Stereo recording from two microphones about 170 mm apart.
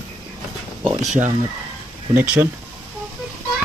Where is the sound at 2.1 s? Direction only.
10° right (ahead or behind).